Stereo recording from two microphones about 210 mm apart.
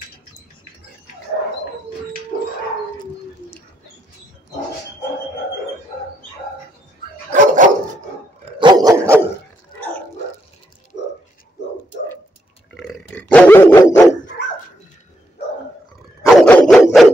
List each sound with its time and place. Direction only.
3.4 s bird: 40° left (ahead or behind)
7.3 s dog: 35° right (ahead or behind)
8.5 s dog: 20° right (ahead or behind)
9.8 s dog: 10° left (ahead or behind)
12.7 s dog: centre (ahead or behind)
16.3 s dog: 5° left (ahead or behind)